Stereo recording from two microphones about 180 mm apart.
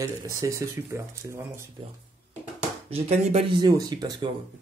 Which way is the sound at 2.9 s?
35° right (ahead or behind).